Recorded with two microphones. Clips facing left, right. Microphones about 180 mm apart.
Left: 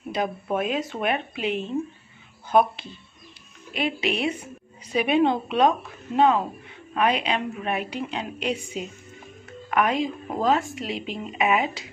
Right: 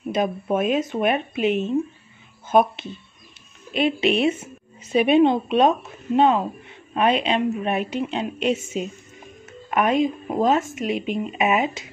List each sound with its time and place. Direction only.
0.1 s a woman's voice: 20° right (ahead or behind)
9.5 s music: 20° right (ahead or behind)
10.2 s a woman's voice: 20° right (ahead or behind)